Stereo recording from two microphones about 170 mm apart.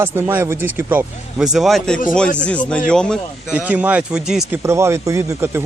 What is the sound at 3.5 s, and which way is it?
A man's voice, 10° right (ahead or behind).